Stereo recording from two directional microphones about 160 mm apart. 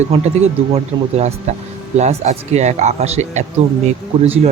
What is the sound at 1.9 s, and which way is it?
Speech, 45° right (ahead or behind).